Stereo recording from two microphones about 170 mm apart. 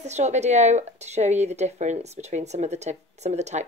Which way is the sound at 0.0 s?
40° right (ahead or behind).